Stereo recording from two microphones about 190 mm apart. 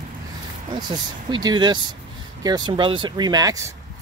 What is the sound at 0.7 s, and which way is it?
Speech, 25° right (ahead or behind).